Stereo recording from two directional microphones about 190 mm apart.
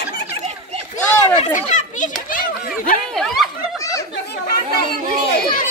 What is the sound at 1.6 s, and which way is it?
Children playing, 40° left (ahead or behind).